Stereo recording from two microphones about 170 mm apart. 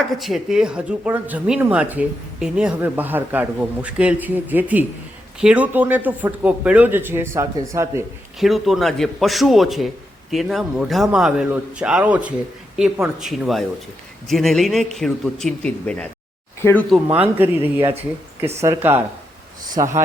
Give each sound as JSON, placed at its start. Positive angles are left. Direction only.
{"t": 0.2, "sound": "speech", "side_deg": 0}
{"t": 8.4, "sound": "a man's voice", "side_deg": 0}
{"t": 17.2, "sound": "speech", "side_deg": -10}